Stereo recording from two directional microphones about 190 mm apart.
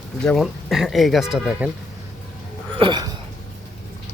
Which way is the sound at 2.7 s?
25° right (ahead or behind).